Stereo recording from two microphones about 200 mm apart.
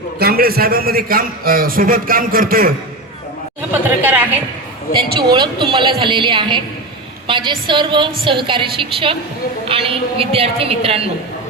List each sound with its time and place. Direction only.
0.2 s a man's voice: 50° right (ahead or behind)
3.7 s speech: 10° right (ahead or behind)
5.1 s a woman's voice: 25° right (ahead or behind)